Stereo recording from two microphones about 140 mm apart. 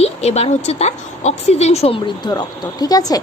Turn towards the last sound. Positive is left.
turn(degrees=25)  # may be behind; listen again after turning